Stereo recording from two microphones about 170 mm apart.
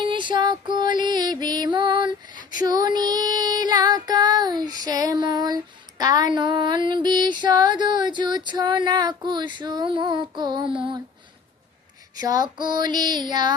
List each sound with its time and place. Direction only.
0.1 s music: 30° right (ahead or behind)
2.6 s child singing: 25° right (ahead or behind)
6.3 s music: 30° right (ahead or behind)
12.2 s speech: 25° right (ahead or behind)